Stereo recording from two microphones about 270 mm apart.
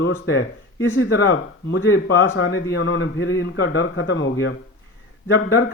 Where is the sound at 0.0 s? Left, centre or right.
Left.